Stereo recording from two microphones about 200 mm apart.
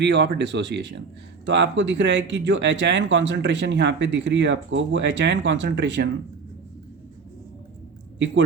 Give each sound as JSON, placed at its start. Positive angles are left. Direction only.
{"t": 0.0, "sound": "speech", "side_deg": -60}